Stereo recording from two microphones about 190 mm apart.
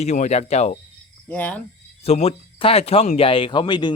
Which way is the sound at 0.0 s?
35° left (ahead or behind).